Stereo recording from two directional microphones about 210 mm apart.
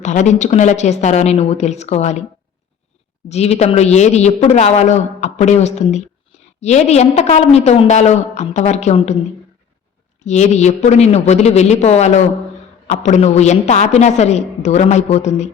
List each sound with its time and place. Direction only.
0.0 s a man's voice: 35° left (ahead or behind)
3.2 s a man's voice: 30° left (ahead or behind)
10.2 s a man's voice: 35° left (ahead or behind)